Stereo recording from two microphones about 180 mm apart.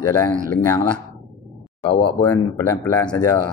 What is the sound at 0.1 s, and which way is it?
Speech, 15° left (ahead or behind).